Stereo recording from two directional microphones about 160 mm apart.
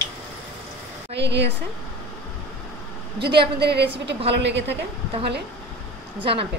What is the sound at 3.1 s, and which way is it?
A woman's voice, 90° right.